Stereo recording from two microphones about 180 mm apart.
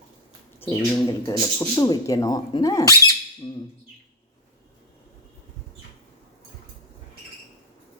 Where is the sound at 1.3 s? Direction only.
20° left (ahead or behind).